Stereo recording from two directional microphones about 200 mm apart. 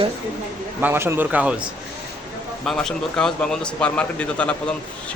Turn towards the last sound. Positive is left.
turn(degrees=5)  # may be behind; listen again after turning